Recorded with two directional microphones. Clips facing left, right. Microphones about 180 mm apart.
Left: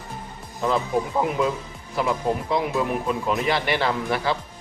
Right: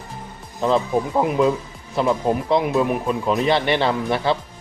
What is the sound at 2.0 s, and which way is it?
Speech, 25° right (ahead or behind).